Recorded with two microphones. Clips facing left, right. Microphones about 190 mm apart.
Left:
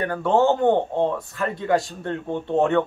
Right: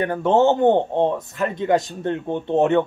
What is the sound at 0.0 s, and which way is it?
A man's voice, 20° right (ahead or behind).